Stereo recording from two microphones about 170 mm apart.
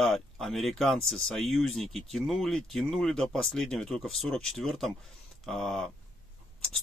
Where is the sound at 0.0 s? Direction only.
Centre (ahead or behind).